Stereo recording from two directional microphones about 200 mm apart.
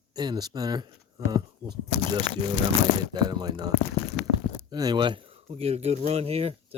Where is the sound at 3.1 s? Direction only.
20° right (ahead or behind).